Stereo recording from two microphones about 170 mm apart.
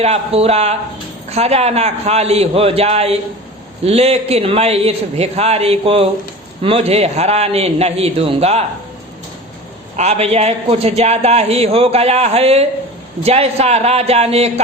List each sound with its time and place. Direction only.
0.0 s a man's voice: 35° right (ahead or behind)
10.0 s a man's voice: 40° right (ahead or behind)